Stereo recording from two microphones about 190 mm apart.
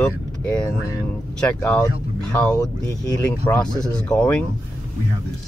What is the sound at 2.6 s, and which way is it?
Speech, 20° left (ahead or behind).